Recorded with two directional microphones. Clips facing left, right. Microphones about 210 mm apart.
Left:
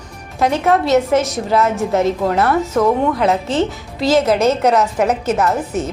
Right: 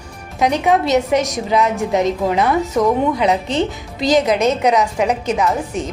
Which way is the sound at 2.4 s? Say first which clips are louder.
Left 1 dB; 15° right (ahead or behind).